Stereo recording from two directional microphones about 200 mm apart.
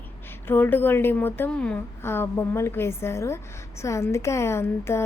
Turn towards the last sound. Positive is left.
turn(degrees=10)  # may be behind; listen again after turning